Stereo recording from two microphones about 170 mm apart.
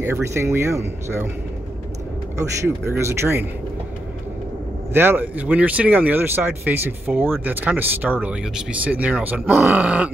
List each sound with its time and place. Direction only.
0.0 s speech: 15° right (ahead or behind)
2.3 s speech: 15° right (ahead or behind)
4.9 s speech: 10° right (ahead or behind)